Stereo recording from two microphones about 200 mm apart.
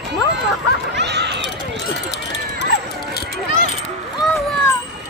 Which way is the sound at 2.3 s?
60° left (ahead or behind).